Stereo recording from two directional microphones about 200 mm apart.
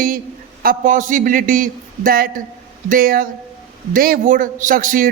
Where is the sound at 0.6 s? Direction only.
45° right (ahead or behind).